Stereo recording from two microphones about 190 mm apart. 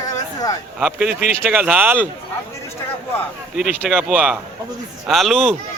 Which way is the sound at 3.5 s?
5° right (ahead or behind).